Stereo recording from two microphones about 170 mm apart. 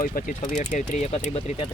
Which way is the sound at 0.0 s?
50° left (ahead or behind).